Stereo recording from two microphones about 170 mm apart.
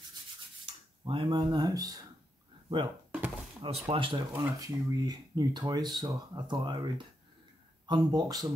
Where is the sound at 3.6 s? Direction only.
35° right (ahead or behind).